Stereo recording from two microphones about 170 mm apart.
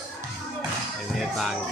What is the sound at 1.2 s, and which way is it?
Speech, centre (ahead or behind).